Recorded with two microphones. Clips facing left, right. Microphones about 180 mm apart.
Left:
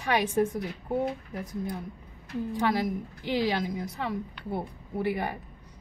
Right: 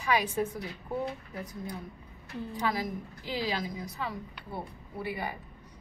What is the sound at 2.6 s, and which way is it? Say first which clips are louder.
A woman's voice: left 4 dB; 65° left (ahead or behind).